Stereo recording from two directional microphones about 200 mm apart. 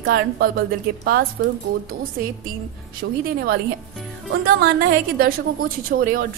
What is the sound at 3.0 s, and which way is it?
Speech, 60° right (ahead or behind).